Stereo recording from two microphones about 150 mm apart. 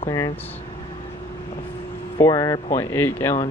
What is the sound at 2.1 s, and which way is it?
Speech, 25° left (ahead or behind).